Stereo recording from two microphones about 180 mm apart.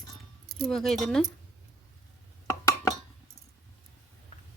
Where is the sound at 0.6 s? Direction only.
Centre (ahead or behind).